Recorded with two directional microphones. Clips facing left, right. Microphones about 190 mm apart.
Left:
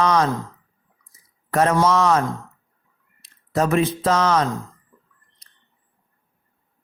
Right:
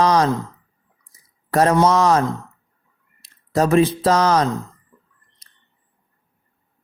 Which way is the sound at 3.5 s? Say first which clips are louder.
Right 4 dB; 35° right (ahead or behind).